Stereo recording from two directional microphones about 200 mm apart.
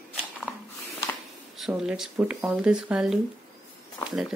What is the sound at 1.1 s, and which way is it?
Speech, centre (ahead or behind).